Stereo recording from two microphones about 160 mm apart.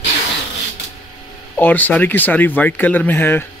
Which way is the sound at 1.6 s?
10° left (ahead or behind).